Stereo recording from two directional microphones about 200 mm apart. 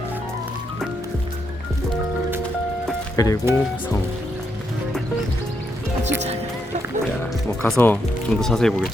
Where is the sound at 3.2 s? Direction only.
15° left (ahead or behind).